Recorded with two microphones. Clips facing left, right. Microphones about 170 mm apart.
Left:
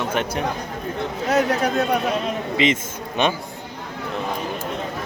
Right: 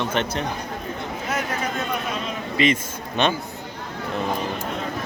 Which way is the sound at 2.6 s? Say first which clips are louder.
Even; 20° left (ahead or behind).